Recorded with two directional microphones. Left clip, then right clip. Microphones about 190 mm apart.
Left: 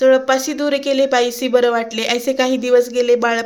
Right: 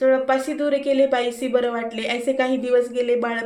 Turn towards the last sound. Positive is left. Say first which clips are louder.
# left 7 dB
turn(degrees=40)  # may be behind; listen again after turning